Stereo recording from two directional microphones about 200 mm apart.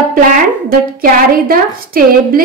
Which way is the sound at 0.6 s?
45° right (ahead or behind).